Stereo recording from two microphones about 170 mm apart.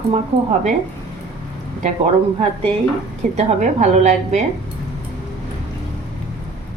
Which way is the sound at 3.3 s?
40° right (ahead or behind).